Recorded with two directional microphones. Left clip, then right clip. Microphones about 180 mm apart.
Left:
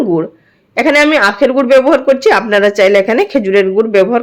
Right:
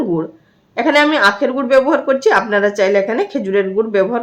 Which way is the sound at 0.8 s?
15° left (ahead or behind).